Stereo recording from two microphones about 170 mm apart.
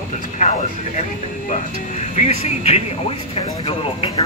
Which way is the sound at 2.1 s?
40° left (ahead or behind).